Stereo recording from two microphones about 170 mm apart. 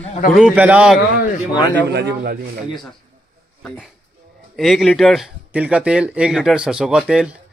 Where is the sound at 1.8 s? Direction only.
90° right.